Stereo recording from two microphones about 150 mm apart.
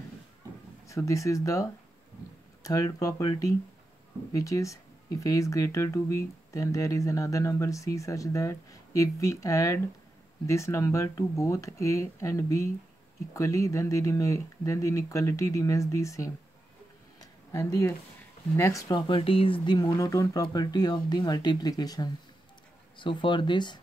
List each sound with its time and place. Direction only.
0.8 s speech: 20° left (ahead or behind)
17.2 s a sound: 20° left (ahead or behind)
18.6 s speech: 20° left (ahead or behind)
19.0 s speech: 35° left (ahead or behind)